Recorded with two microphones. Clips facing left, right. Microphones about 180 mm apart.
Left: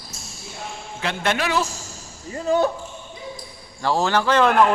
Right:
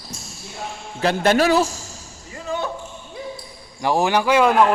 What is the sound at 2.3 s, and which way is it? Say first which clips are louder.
Speech: left 7 dB; 40° left (ahead or behind).